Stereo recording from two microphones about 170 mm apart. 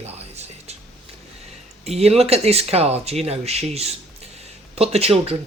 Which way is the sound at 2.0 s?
35° right (ahead or behind).